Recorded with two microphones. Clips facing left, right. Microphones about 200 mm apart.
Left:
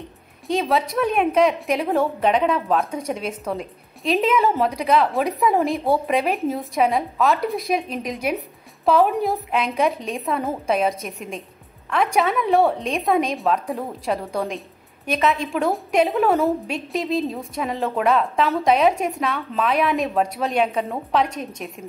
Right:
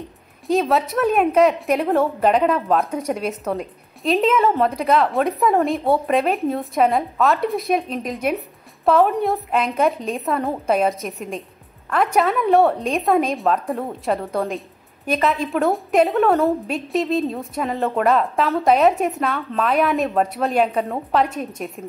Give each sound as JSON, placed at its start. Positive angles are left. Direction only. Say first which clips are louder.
{"t": 0.7, "sound": "a woman's voice", "louder": "right 2 dB", "side_deg": 0}